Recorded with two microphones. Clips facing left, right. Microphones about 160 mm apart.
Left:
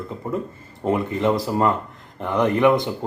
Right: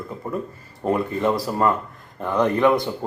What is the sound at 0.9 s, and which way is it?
Speech, 20° left (ahead or behind).